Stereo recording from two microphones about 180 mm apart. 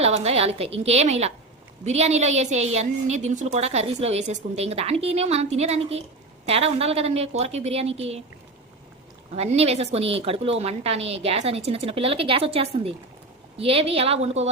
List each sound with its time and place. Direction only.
0.0 s a woman's voice: 35° right (ahead or behind)
9.3 s a woman's voice: 35° right (ahead or behind)